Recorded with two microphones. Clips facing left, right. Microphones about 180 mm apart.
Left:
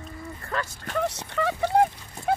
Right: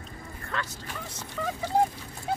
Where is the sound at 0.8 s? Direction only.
70° left (ahead or behind).